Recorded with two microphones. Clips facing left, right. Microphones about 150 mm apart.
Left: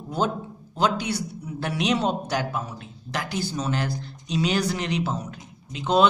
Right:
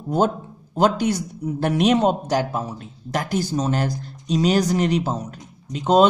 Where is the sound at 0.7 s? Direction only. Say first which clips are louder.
Right 5 dB; 45° right (ahead or behind).